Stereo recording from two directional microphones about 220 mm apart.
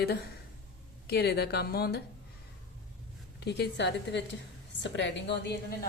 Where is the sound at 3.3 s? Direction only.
50° left (ahead or behind).